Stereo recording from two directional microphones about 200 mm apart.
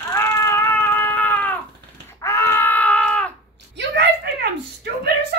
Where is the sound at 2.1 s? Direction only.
15° left (ahead or behind).